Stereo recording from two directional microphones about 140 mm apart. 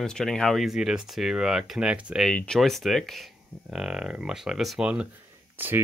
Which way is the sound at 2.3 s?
5° left (ahead or behind).